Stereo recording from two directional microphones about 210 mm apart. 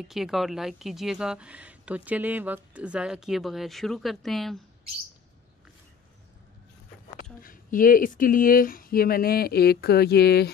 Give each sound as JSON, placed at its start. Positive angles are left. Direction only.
{"t": 0.1, "sound": "a woman's voice", "side_deg": 0}
{"t": 7.4, "sound": "speech", "side_deg": 40}